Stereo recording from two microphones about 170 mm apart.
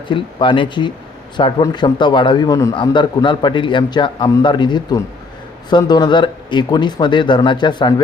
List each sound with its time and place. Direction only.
0.1 s a man's voice: 30° left (ahead or behind)